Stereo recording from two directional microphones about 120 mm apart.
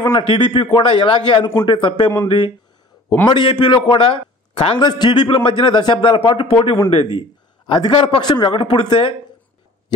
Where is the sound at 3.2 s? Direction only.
40° left (ahead or behind).